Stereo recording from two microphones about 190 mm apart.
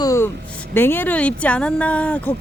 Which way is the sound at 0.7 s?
10° left (ahead or behind).